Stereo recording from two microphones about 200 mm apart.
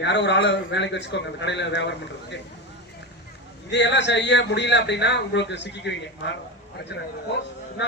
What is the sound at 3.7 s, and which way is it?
A man's voice, 60° left (ahead or behind).